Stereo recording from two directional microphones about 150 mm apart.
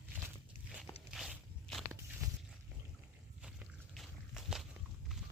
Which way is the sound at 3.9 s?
Centre (ahead or behind).